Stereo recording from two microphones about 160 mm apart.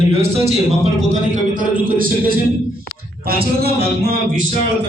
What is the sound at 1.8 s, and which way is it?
Speech, 60° right (ahead or behind).